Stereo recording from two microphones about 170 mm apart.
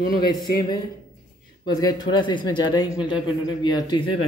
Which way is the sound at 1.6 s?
25° left (ahead or behind).